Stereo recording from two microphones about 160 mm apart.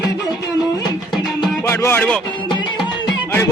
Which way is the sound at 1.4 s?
15° left (ahead or behind).